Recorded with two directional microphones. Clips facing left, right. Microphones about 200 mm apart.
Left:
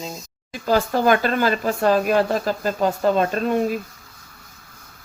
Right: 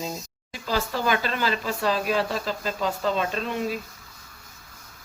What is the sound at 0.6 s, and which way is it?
Speech, 50° left (ahead or behind).